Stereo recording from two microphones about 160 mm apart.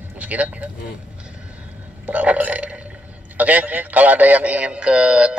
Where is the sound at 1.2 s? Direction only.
5° right (ahead or behind).